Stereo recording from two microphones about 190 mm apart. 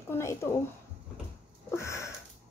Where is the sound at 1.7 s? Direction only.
15° left (ahead or behind).